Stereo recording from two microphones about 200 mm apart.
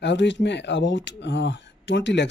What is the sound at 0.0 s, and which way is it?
Speech, 60° left (ahead or behind).